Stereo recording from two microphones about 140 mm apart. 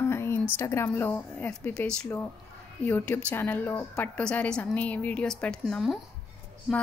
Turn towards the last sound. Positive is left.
turn(degrees=-5)  # may be behind; listen again after turning